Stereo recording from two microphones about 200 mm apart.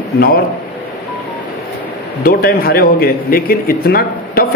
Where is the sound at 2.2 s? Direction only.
50° left (ahead or behind).